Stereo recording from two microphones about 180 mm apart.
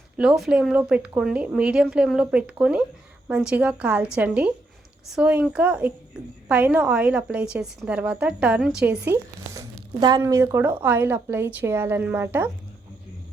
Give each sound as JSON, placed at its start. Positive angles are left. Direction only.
{"t": 0.2, "sound": "speech", "side_deg": -5}